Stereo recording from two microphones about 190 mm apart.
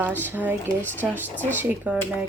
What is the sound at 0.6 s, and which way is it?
Speech, 10° left (ahead or behind).